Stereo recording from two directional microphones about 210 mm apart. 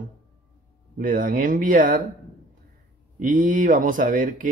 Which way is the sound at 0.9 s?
40° right (ahead or behind).